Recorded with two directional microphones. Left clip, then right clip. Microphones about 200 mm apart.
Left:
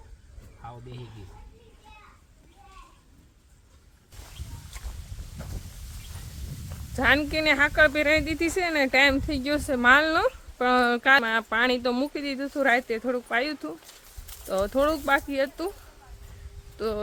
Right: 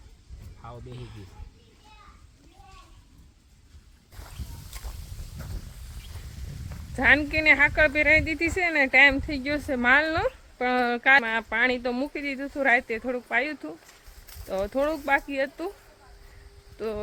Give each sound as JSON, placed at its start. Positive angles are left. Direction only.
{"t": 0.6, "sound": "speech", "side_deg": 0}
{"t": 4.8, "sound": "boat", "side_deg": -25}
{"t": 6.9, "sound": "speech", "side_deg": 20}
{"t": 16.7, "sound": "speech", "side_deg": 25}